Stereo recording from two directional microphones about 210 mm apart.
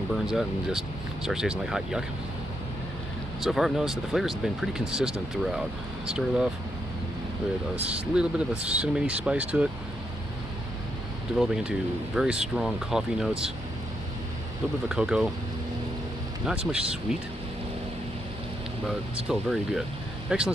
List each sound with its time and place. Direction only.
0.3 s speech: 5° right (ahead or behind)
3.3 s speech: centre (ahead or behind)
7.7 s speech: 5° right (ahead or behind)
11.3 s speech: 5° right (ahead or behind)
14.9 s speech: 5° right (ahead or behind)
16.4 s speech: 5° right (ahead or behind)
18.9 s speech: centre (ahead or behind)